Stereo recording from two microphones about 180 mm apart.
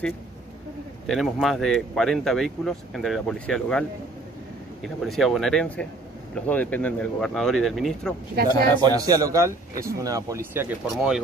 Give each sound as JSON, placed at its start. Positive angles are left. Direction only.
{"t": 1.0, "sound": "speech", "side_deg": 0}
{"t": 4.8, "sound": "speech", "side_deg": 0}
{"t": 8.4, "sound": "speech", "side_deg": -60}
{"t": 8.8, "sound": "a man's voice", "side_deg": -20}